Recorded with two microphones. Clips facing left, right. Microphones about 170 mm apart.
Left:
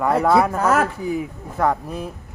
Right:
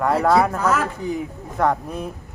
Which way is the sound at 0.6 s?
55° left (ahead or behind).